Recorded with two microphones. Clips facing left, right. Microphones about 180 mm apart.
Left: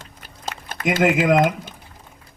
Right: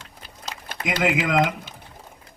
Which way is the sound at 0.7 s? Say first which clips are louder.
Left 5 dB; 50° left (ahead or behind).